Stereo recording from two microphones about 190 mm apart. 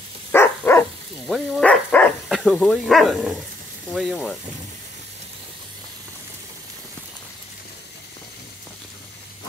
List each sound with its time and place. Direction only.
0.3 s dog: 10° left (ahead or behind)
1.2 s speech: centre (ahead or behind)